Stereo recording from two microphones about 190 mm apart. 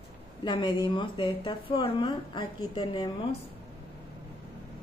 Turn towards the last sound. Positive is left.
turn(degrees=25)  # may be behind; listen again after turning